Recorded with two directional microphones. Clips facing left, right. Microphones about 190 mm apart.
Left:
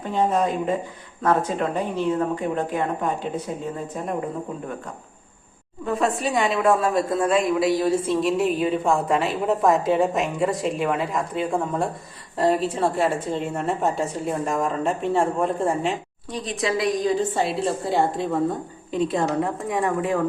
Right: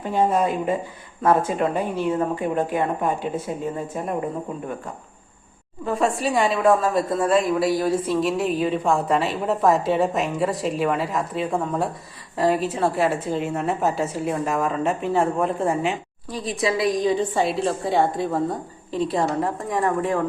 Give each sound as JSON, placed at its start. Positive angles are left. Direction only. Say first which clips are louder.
{"t": 0.1, "sound": "speech", "louder": "right 1 dB", "side_deg": -10}
{"t": 5.8, "sound": "a woman's voice", "louder": "right 1 dB", "side_deg": 0}